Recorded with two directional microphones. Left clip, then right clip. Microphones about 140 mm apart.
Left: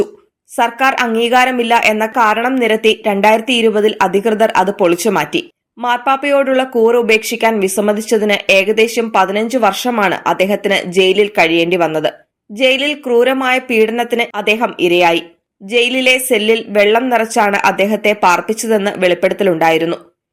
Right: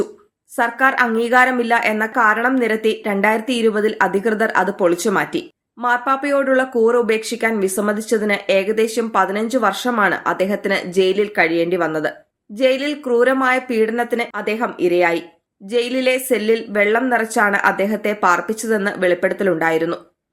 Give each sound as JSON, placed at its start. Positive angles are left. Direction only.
{"t": 0.5, "sound": "speech", "side_deg": 10}